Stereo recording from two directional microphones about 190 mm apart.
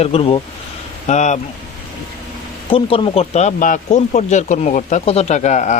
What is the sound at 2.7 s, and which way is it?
A man's voice, 30° left (ahead or behind).